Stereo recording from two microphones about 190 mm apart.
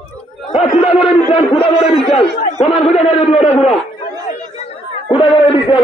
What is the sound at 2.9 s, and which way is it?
Speech, 30° left (ahead or behind).